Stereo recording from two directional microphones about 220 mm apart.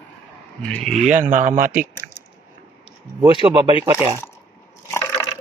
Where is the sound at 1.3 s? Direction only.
35° right (ahead or behind).